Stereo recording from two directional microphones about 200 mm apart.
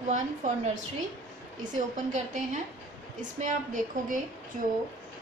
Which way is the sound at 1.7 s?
40° right (ahead or behind).